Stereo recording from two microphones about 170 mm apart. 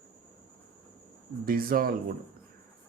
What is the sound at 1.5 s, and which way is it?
Speech, 60° right (ahead or behind).